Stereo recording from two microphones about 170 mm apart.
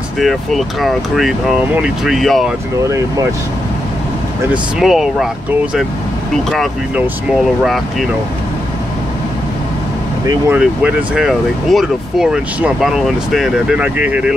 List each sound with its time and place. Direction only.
0.2 s speech: centre (ahead or behind)
2.9 s speech: 20° right (ahead or behind)
4.7 s speech: centre (ahead or behind)
6.3 s speech: centre (ahead or behind)
10.5 s speech: 10° right (ahead or behind)